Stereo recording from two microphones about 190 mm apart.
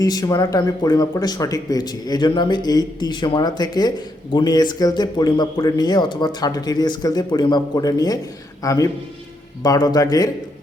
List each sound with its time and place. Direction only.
0.0 s a man's voice: 20° left (ahead or behind)